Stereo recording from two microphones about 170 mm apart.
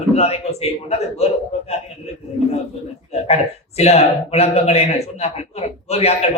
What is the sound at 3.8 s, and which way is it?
A man's voice, 40° left (ahead or behind).